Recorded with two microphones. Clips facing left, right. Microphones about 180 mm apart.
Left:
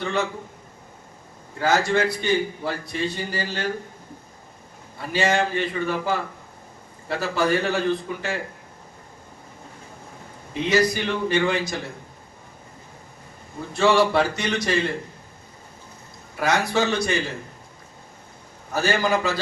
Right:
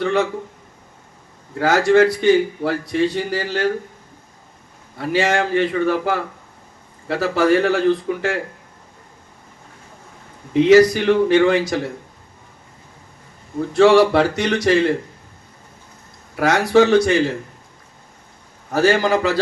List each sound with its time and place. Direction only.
0.0 s a man's voice: 75° right (ahead or behind)
1.5 s a man's voice: 80° right
4.9 s a man's voice: 90° right; by 8.2 s 70° right (ahead or behind)
10.5 s a man's voice: 85° right
13.7 s a man's voice: 80° right
16.4 s a man's voice: 85° right
18.7 s a man's voice: 85° right